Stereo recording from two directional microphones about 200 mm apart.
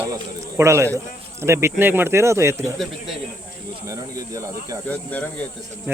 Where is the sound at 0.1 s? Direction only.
15° right (ahead or behind).